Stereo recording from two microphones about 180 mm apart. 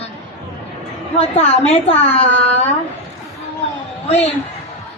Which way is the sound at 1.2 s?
40° left (ahead or behind).